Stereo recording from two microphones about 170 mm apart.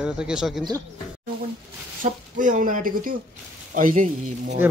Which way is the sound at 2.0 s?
50° right (ahead or behind).